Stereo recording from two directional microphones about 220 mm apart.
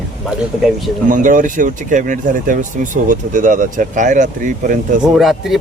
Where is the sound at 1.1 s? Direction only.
35° right (ahead or behind).